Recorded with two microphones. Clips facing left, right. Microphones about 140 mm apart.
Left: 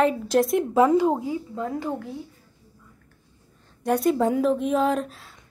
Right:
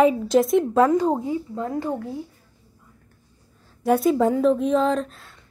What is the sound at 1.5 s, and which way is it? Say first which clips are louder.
Speech: right 2 dB; 20° right (ahead or behind).